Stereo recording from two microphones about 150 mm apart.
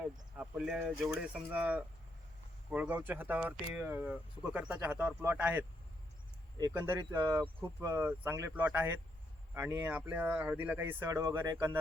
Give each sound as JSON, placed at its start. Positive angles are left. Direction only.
{"t": 0.0, "sound": "speech", "side_deg": -5}
{"t": 6.7, "sound": "speech", "side_deg": -15}